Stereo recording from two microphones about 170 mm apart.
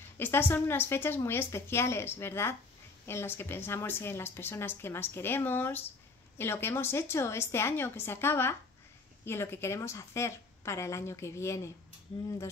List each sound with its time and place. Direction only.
0.2 s a woman's voice: 10° left (ahead or behind)